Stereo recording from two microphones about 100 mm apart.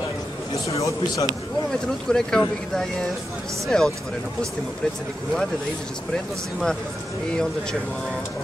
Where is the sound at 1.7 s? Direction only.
5° left (ahead or behind).